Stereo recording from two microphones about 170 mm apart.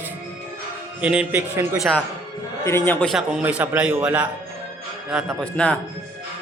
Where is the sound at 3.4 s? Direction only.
10° right (ahead or behind).